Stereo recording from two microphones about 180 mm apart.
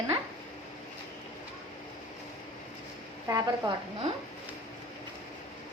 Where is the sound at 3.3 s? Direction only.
20° right (ahead or behind).